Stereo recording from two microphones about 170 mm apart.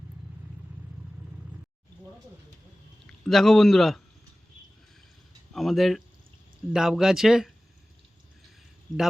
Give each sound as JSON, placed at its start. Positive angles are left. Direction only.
{"t": 3.1, "sound": "speech", "side_deg": 0}
{"t": 5.5, "sound": "speech", "side_deg": 0}